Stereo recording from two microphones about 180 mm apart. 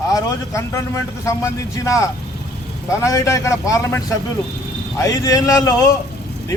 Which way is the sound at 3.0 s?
15° left (ahead or behind).